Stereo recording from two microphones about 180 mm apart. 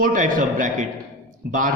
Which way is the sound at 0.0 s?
45° right (ahead or behind).